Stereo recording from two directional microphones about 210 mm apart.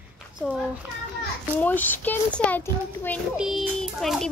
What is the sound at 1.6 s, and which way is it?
A child's voice, 10° left (ahead or behind).